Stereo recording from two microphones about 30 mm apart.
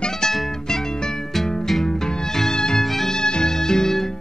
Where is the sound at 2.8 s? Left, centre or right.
Centre.